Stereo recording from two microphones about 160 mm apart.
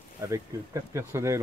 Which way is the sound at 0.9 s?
20° right (ahead or behind).